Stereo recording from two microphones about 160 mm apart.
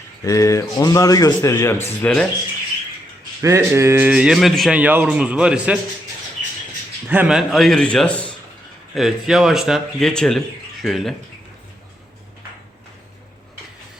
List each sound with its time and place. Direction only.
0.3 s a man's voice: 20° left (ahead or behind)
3.4 s a man's voice: 15° right (ahead or behind)
7.1 s speech: 10° right (ahead or behind)